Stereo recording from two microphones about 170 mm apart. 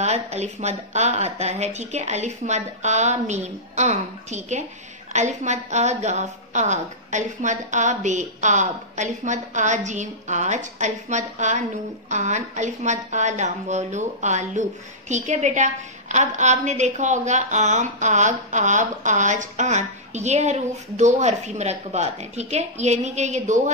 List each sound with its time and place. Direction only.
0.0 s a woman's voice: 40° right (ahead or behind)